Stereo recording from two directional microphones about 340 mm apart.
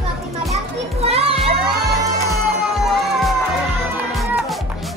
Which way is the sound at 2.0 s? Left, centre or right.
Centre.